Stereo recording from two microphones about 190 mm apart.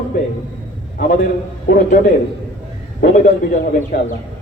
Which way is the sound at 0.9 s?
50° left (ahead or behind).